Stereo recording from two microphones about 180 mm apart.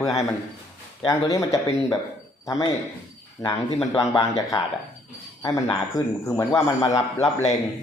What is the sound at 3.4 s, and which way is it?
Speech, 20° left (ahead or behind).